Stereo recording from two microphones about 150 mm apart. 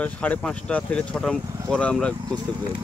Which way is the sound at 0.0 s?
10° left (ahead or behind).